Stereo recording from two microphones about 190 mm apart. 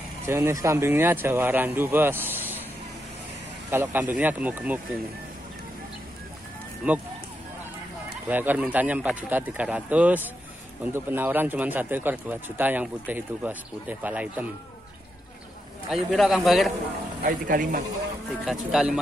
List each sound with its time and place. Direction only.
0.2 s speech: 15° right (ahead or behind)
3.7 s speech: 10° right (ahead or behind)
6.8 s speech: 5° right (ahead or behind)
8.3 s speech: 10° right (ahead or behind)
16.1 s a man's voice: centre (ahead or behind)
17.2 s speech: 45° right (ahead or behind)
18.4 s a man's voice: 5° right (ahead or behind)